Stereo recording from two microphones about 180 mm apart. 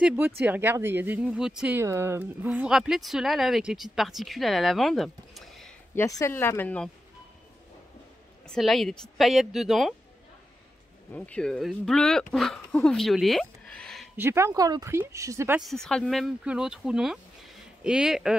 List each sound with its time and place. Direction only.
0.0 s speech: 10° right (ahead or behind)
5.9 s speech: 15° left (ahead or behind)
8.5 s speech: centre (ahead or behind)
11.1 s speech: 10° left (ahead or behind)
14.1 s speech: 15° right (ahead or behind)
15.6 s speech: centre (ahead or behind)